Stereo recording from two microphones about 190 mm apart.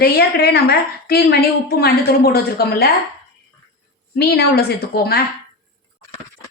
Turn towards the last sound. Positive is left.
turn(degrees=55)  # may be behind; listen again after turning